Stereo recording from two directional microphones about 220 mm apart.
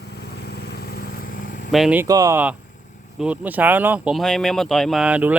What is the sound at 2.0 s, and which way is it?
Speech, 15° right (ahead or behind).